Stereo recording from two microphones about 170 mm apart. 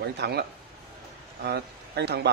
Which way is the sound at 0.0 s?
75° right (ahead or behind).